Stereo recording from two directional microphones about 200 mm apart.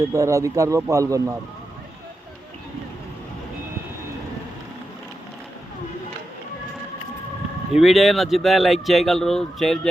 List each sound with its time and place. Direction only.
0.0 s a man's voice: 15° right (ahead or behind)
7.7 s speech: centre (ahead or behind)